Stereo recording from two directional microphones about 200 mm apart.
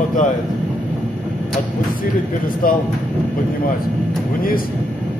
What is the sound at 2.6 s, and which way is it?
Speech, 45° left (ahead or behind).